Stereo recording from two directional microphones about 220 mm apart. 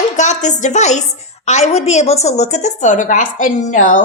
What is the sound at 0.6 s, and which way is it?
A woman's voice, 30° left (ahead or behind).